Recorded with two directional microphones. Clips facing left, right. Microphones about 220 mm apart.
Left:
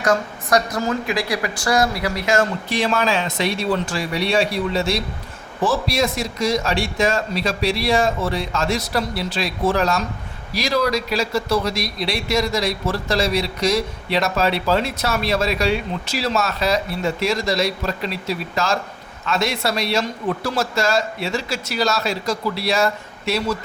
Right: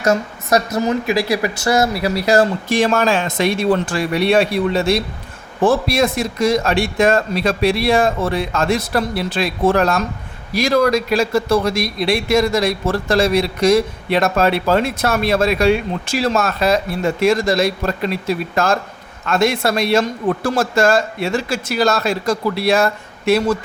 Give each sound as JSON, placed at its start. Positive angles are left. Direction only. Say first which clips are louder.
{"t": 0.0, "sound": "speech", "louder": "right 3 dB", "side_deg": -25}
{"t": 2.7, "sound": "a man's voice", "louder": "right 4 dB", "side_deg": -45}